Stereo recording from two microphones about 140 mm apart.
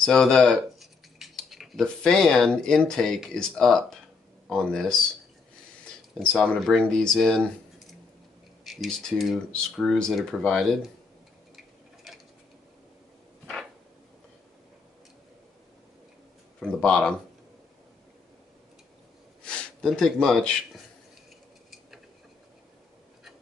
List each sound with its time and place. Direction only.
0.0 s speech: 5° left (ahead or behind)
6.1 s speech: 5° left (ahead or behind)
16.5 s speech: 5° left (ahead or behind)
19.4 s speech: 5° left (ahead or behind)